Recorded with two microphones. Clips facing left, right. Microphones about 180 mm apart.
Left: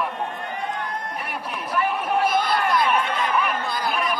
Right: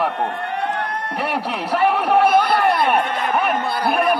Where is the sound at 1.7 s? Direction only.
70° right (ahead or behind).